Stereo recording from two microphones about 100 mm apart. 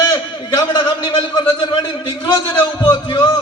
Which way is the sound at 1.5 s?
40° left (ahead or behind).